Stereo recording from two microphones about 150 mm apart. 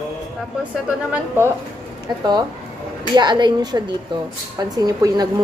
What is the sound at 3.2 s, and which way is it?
A woman's voice, 30° right (ahead or behind).